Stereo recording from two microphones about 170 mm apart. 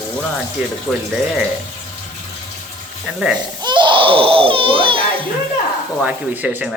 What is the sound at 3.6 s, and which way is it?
Baby cry, 25° right (ahead or behind).